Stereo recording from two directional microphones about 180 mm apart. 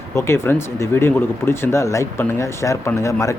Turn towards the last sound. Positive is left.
turn(degrees=15)  # may be behind; listen again after turning